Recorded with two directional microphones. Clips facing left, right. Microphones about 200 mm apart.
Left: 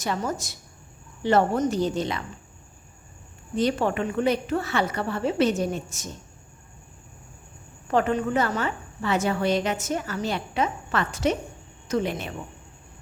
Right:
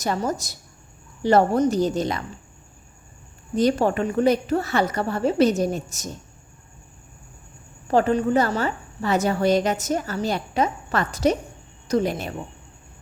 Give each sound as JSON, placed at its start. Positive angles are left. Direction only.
{"t": 0.0, "sound": "a woman's voice", "side_deg": -40}
{"t": 3.5, "sound": "a woman's voice", "side_deg": -40}
{"t": 7.9, "sound": "a woman's voice", "side_deg": -35}